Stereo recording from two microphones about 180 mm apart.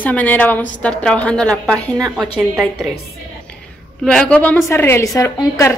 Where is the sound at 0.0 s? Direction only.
10° left (ahead or behind).